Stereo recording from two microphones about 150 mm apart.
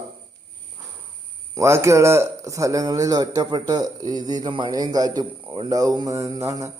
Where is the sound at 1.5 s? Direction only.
20° right (ahead or behind).